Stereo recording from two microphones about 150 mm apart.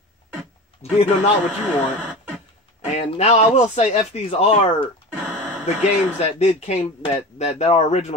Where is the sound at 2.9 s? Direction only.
45° left (ahead or behind).